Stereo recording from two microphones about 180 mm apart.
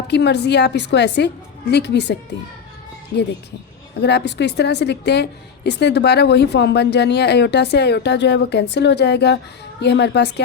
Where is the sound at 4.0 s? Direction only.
70° left (ahead or behind).